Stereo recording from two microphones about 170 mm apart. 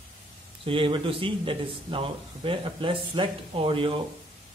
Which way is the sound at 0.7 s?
30° right (ahead or behind).